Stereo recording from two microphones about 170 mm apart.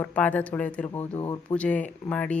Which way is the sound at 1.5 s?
5° left (ahead or behind).